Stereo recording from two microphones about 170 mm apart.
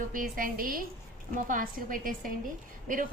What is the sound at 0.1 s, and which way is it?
A woman's voice, 55° right (ahead or behind).